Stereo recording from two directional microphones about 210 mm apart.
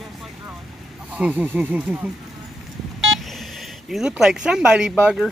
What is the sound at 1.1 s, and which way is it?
Speech, 10° right (ahead or behind).